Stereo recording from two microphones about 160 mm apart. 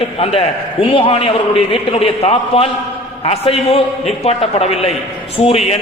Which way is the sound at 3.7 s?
40° left (ahead or behind).